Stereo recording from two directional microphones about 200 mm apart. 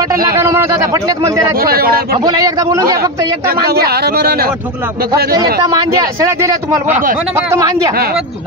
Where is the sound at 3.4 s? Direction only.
50° right (ahead or behind).